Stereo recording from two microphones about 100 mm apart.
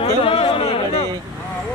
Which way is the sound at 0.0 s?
65° left (ahead or behind).